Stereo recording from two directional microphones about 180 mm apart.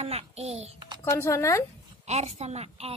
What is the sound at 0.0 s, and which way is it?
Speech, 35° right (ahead or behind).